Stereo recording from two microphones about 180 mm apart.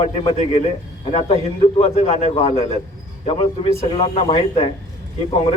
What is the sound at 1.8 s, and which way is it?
A man's voice, 35° left (ahead or behind).